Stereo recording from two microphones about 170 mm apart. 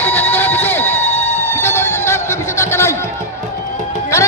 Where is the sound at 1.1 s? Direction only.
40° left (ahead or behind).